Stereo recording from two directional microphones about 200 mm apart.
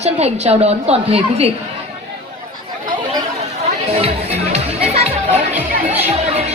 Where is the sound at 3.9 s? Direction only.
30° right (ahead or behind).